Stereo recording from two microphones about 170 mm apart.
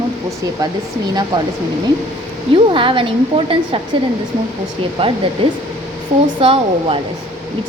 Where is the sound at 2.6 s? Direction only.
30° right (ahead or behind).